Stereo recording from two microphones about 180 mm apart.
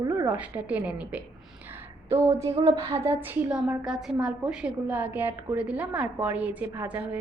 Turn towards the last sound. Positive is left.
turn(degrees=-10)  # may be behind; listen again after turning